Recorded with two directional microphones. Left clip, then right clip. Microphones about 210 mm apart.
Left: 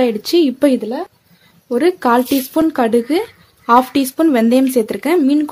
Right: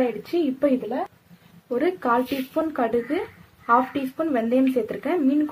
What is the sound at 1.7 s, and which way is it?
Speech, 50° left (ahead or behind).